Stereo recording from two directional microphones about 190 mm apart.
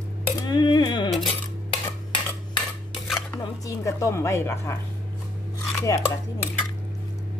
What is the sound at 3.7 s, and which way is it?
A woman's voice, 15° left (ahead or behind).